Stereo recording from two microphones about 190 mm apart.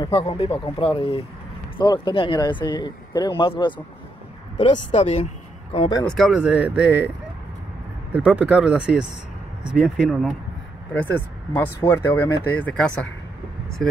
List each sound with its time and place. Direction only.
0.0 s speech: 25° left (ahead or behind)
6.0 s speech: centre (ahead or behind)
8.1 s speech: 5° right (ahead or behind)
10.9 s speech: 10° left (ahead or behind)